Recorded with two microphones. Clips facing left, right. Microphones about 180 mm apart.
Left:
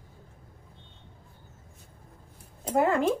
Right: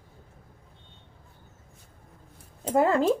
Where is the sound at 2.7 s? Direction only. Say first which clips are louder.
Right 2 dB; 35° right (ahead or behind).